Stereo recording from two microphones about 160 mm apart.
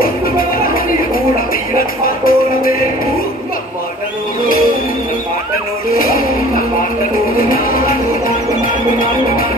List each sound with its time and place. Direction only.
0.0 s music: 65° left (ahead or behind)
1.8 s music: 65° left (ahead or behind)
5.9 s music: 65° left (ahead or behind)